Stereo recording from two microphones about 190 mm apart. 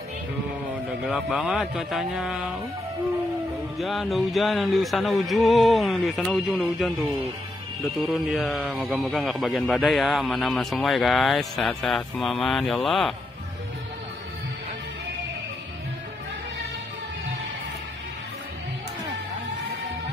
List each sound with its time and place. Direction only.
1.0 s a man's voice: 5° right (ahead or behind)
3.7 s a man's voice: centre (ahead or behind)